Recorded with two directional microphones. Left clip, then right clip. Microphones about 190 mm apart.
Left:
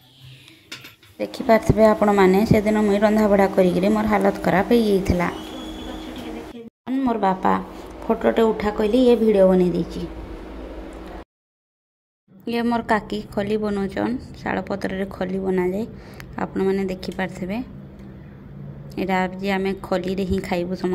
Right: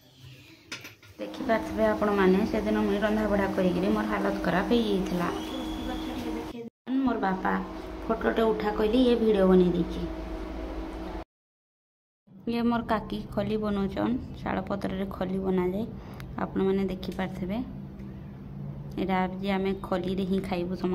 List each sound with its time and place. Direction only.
1.2 s a woman's voice: 30° left (ahead or behind)
6.9 s a sound: 20° left (ahead or behind)
8.2 s a woman's voice: 20° left (ahead or behind)
9.7 s a woman's voice: 25° left (ahead or behind)
12.4 s a woman's voice: 15° left (ahead or behind)
18.9 s a woman's voice: 15° left (ahead or behind)